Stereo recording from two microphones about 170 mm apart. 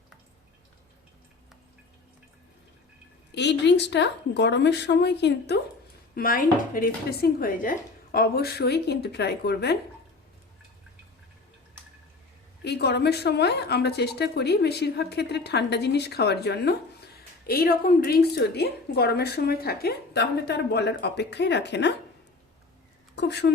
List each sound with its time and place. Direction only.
3.3 s speech: 90° left
6.1 s a woman's voice: 55° left (ahead or behind); by 9.7 s 70° left (ahead or behind)
12.6 s a woman's voice: 75° left (ahead or behind)
17.4 s a woman's voice: 60° left (ahead or behind); by 21.9 s 90° left
23.1 s speech: 85° left